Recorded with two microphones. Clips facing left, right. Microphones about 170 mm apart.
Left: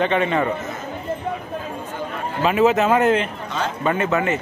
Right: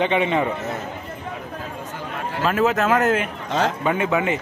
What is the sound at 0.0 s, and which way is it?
Speech, 15° right (ahead or behind).